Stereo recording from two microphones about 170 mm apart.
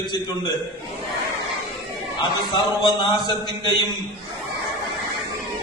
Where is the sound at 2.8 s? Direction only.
25° left (ahead or behind).